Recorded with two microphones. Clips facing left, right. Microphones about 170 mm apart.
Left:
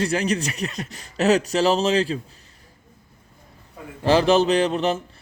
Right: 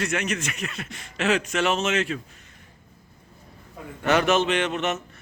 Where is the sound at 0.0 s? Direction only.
35° left (ahead or behind).